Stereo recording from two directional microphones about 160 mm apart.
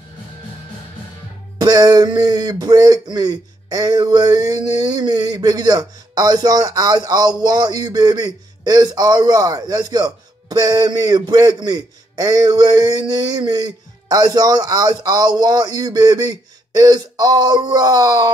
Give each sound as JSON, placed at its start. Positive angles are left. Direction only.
{"t": 1.6, "sound": "speech", "side_deg": -25}